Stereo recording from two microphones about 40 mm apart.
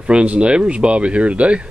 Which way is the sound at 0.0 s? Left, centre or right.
Right.